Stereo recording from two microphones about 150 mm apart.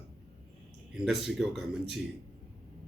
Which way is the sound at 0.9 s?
Centre (ahead or behind).